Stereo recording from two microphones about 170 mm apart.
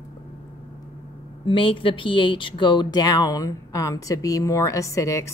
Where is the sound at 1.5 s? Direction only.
30° left (ahead or behind).